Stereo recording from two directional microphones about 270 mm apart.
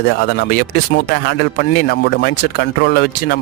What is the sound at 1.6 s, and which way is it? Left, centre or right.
Speech, left.